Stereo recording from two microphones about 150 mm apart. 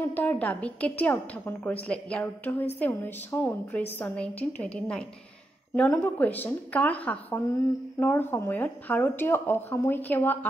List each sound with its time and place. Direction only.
0.1 s a woman's voice: 10° left (ahead or behind)